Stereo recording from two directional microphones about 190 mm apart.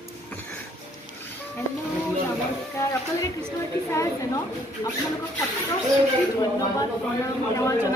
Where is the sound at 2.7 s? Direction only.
15° left (ahead or behind).